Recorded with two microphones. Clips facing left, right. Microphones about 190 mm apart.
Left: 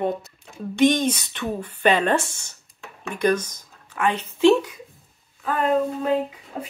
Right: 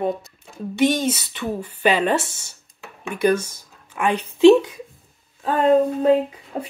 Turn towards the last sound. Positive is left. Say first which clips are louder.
# right 3 dB
turn(degrees=-30)  # may be behind; listen again after turning